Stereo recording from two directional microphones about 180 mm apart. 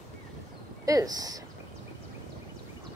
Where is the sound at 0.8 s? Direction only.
20° right (ahead or behind).